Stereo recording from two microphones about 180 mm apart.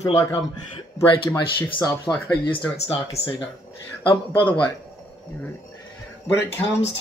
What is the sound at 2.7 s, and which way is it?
Speech, 35° left (ahead or behind).